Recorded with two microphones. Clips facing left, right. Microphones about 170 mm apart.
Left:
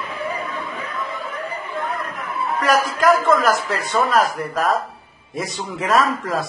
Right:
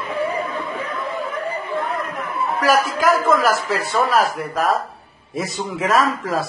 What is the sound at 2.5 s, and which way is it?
A man's voice, centre (ahead or behind).